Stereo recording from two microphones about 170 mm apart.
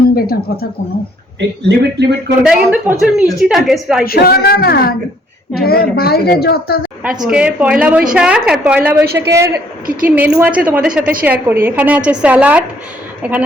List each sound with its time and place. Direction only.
0.1 s a woman's voice: 60° left (ahead or behind)
1.4 s speech: 85° right
2.4 s speech: 5° right (ahead or behind)
4.0 s a woman's voice: 60° left (ahead or behind)
7.0 s a woman's voice: 5° right (ahead or behind)